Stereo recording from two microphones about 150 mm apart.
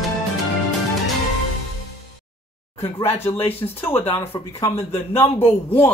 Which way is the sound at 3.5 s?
15° left (ahead or behind).